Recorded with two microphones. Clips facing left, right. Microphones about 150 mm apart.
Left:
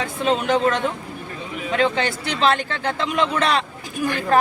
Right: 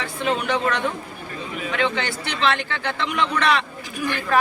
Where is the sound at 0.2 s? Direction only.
35° left (ahead or behind).